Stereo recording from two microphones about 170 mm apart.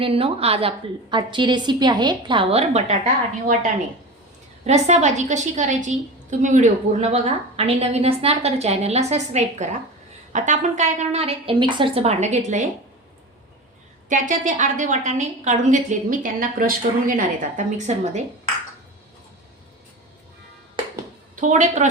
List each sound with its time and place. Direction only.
0.0 s a woman's voice: 35° right (ahead or behind)
4.6 s a woman's voice: 40° right (ahead or behind)
14.1 s a woman's voice: 50° right (ahead or behind)
21.4 s a woman's voice: 45° right (ahead or behind)